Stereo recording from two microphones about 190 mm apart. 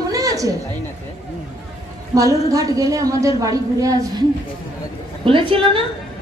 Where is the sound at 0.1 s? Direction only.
15° right (ahead or behind).